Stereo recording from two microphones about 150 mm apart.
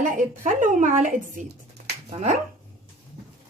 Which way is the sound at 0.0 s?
55° right (ahead or behind).